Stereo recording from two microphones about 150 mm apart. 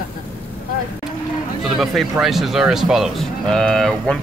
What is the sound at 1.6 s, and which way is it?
Speech, centre (ahead or behind).